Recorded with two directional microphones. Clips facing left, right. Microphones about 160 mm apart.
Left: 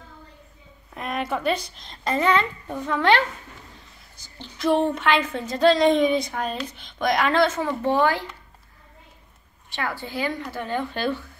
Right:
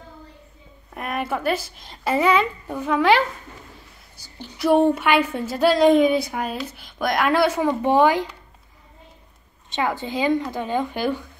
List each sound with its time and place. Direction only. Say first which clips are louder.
0.9 s a woman's voice: right 1 dB; 5° right (ahead or behind)
4.2 s a woman's voice: right 2 dB; 10° right (ahead or behind)
9.7 s a woman's voice: right 6 dB; 20° right (ahead or behind)